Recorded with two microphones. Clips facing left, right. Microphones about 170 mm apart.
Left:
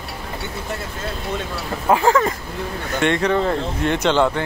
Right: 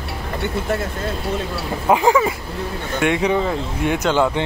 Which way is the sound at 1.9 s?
15° right (ahead or behind).